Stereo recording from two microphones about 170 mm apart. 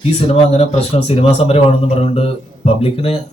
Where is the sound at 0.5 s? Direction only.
35° left (ahead or behind).